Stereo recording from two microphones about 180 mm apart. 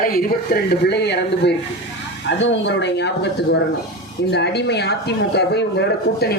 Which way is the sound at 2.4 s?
80° left.